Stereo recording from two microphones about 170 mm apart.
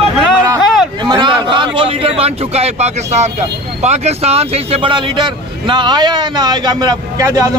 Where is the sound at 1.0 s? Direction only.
25° right (ahead or behind).